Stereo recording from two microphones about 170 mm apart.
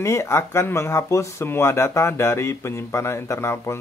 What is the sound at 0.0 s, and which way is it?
Speech, 15° left (ahead or behind).